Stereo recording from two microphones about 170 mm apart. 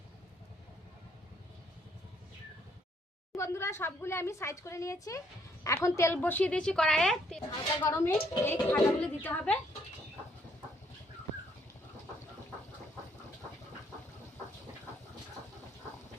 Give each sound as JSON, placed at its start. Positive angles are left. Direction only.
{"t": 3.3, "sound": "a woman's voice", "side_deg": 15}
{"t": 7.9, "sound": "a woman's voice", "side_deg": 20}